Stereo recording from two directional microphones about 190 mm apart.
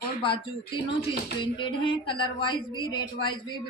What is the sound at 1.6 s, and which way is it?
A woman's voice, 25° left (ahead or behind).